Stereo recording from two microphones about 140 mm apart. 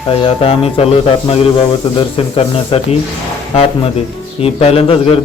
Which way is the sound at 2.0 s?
40° left (ahead or behind).